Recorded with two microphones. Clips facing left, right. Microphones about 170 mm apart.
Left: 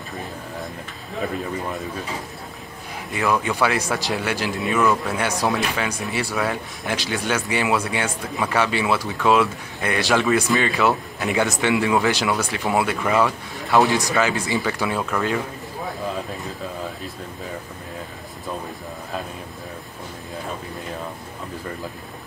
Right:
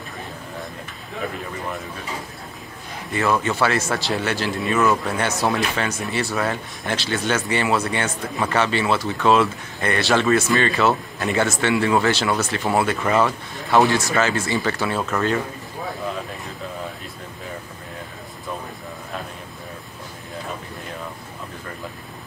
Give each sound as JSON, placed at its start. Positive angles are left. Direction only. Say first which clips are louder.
{"t": 3.1, "sound": "speech", "louder": "right 1 dB", "side_deg": 10}
{"t": 13.8, "sound": "speech", "louder": "even", "side_deg": 15}